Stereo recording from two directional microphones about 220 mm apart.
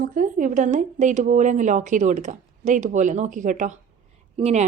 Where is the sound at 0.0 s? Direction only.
35° right (ahead or behind).